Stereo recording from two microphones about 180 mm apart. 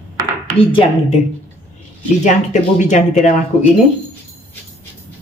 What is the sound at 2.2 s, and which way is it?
Speech, 40° left (ahead or behind).